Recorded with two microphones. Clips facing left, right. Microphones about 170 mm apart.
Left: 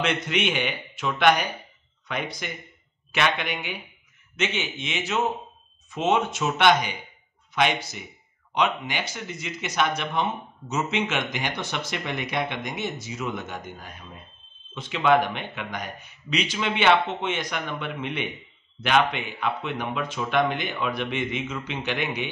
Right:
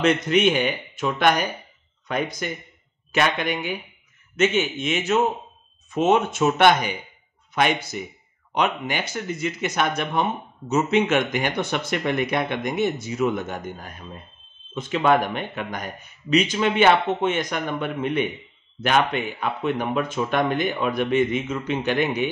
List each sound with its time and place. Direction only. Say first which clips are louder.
0.0 s speech: right 7 dB; 40° right (ahead or behind)